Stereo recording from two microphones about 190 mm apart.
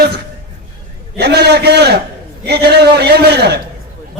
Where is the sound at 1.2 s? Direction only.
60° right (ahead or behind).